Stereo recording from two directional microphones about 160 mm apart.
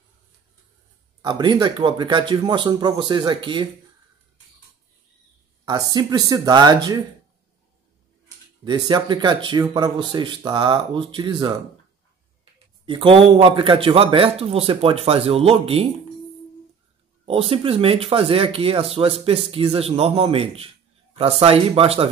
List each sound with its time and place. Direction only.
1.2 s speech: 25° right (ahead or behind)
5.7 s speech: 25° right (ahead or behind)
8.6 s speech: 25° right (ahead or behind)
12.8 s a man's voice: 35° right (ahead or behind)
17.3 s a man's voice: 35° right (ahead or behind)